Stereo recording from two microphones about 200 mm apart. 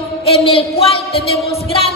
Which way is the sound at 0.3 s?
30° left (ahead or behind).